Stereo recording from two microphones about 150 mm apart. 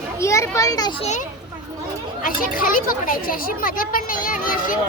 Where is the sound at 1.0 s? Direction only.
50° left (ahead or behind).